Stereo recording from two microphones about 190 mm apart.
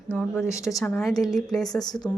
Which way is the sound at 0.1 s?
Centre (ahead or behind).